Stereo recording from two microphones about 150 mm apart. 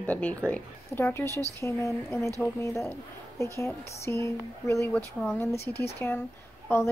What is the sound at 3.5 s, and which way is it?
Speech, 20° left (ahead or behind).